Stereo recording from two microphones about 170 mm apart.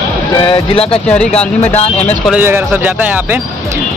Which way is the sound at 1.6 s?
40° left (ahead or behind).